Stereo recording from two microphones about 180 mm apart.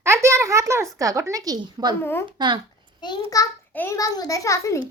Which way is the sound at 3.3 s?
15° left (ahead or behind).